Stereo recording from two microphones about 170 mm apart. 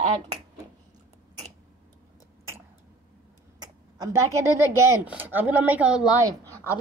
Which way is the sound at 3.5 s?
20° right (ahead or behind).